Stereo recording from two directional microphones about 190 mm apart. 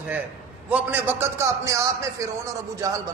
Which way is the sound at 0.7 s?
10° right (ahead or behind).